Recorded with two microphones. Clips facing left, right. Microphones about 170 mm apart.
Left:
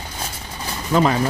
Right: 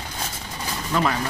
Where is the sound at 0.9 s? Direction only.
30° left (ahead or behind).